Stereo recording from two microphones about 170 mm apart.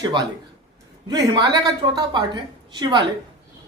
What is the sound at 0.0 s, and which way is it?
Speech, 25° right (ahead or behind).